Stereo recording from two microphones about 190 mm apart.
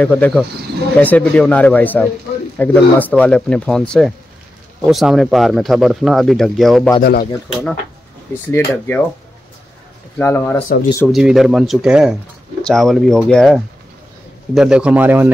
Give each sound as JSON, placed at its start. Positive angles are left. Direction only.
{"t": 0.0, "sound": "speech", "side_deg": 5}
{"t": 7.0, "sound": "speech", "side_deg": 55}
{"t": 8.5, "sound": "speech", "side_deg": 10}
{"t": 10.1, "sound": "speech", "side_deg": 10}
{"t": 11.1, "sound": "a man's voice", "side_deg": 0}